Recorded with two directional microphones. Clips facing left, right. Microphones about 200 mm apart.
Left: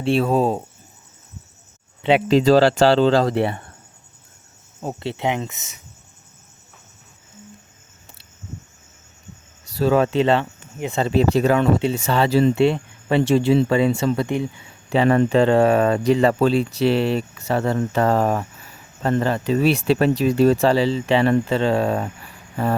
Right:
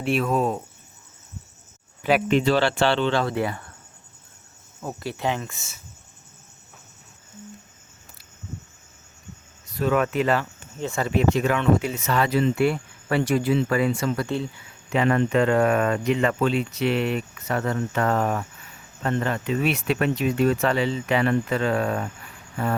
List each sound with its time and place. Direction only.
0.0 s speech: 30° left (ahead or behind)
2.0 s speech: 25° left (ahead or behind)
2.4 s speech: 40° left (ahead or behind)
4.8 s speech: 25° left (ahead or behind)
9.7 s speech: 30° left (ahead or behind)
10.8 s speech: 15° left (ahead or behind)
11.0 s speech: 30° left (ahead or behind)
14.8 s speech: 30° left (ahead or behind)